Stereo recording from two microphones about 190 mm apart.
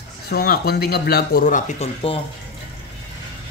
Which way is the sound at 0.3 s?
55° left (ahead or behind).